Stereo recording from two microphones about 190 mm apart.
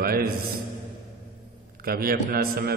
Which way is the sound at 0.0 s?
55° right (ahead or behind).